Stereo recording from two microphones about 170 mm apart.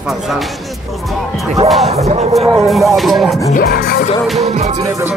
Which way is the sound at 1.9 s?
40° right (ahead or behind).